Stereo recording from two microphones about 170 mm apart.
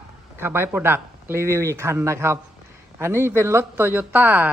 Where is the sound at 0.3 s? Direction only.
15° right (ahead or behind).